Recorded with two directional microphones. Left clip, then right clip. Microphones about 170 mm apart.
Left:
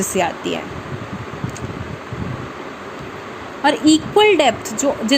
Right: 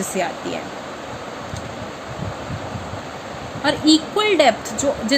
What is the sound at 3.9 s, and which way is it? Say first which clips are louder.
A woman's voice: left 3 dB; 20° left (ahead or behind).